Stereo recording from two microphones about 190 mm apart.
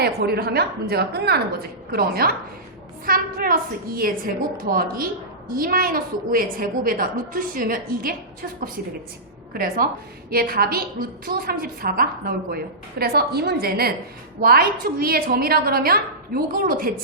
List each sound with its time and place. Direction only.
0.0 s a woman's voice: 55° right (ahead or behind)
9.5 s a woman's voice: 50° right (ahead or behind)